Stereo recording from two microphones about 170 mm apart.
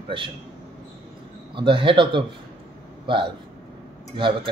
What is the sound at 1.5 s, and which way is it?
Speech, 30° right (ahead or behind).